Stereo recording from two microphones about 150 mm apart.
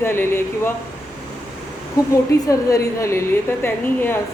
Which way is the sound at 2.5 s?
20° left (ahead or behind).